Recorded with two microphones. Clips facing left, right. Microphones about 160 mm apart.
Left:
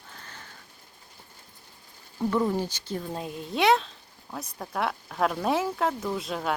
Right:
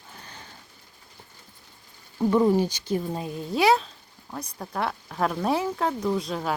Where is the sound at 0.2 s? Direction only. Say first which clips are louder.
Right 2 dB; 15° right (ahead or behind).